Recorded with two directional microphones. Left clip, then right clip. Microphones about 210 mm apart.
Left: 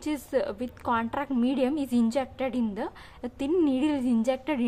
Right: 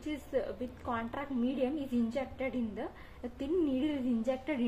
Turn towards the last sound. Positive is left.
turn(degrees=30)  # may be behind; listen again after turning